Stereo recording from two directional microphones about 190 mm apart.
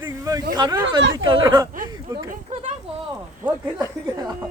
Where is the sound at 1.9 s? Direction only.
20° right (ahead or behind).